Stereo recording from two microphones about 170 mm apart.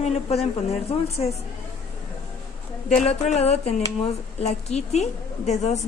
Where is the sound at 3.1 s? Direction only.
40° left (ahead or behind).